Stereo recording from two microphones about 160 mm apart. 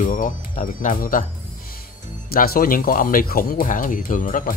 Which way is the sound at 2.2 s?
70° left (ahead or behind).